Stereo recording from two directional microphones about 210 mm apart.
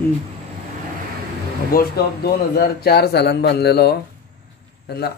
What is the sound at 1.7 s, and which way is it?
A man's voice, 45° left (ahead or behind).